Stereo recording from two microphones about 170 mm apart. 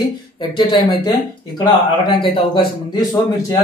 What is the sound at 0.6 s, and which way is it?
Speech, 25° left (ahead or behind).